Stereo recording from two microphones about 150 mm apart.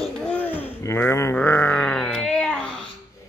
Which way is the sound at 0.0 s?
10° left (ahead or behind).